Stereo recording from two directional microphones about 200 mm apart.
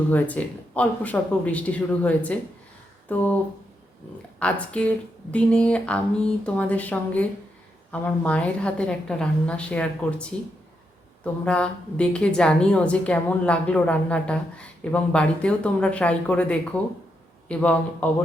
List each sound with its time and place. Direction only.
0.1 s a woman's voice: 10° left (ahead or behind)